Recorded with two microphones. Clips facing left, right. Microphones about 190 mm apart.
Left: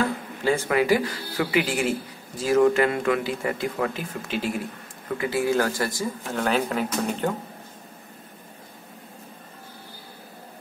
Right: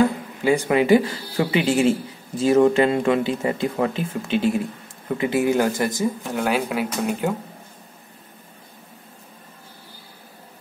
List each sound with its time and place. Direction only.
0.0 s speech: 15° right (ahead or behind)
6.4 s speech: 10° right (ahead or behind)